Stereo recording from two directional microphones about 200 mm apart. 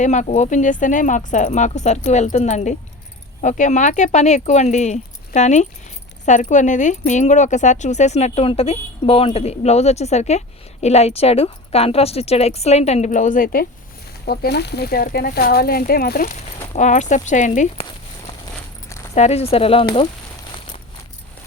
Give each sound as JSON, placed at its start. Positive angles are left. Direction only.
{"t": 0.0, "sound": "speech", "side_deg": 35}
{"t": 14.3, "sound": "speech", "side_deg": 55}
{"t": 16.7, "sound": "speech", "side_deg": 35}
{"t": 19.1, "sound": "speech", "side_deg": 30}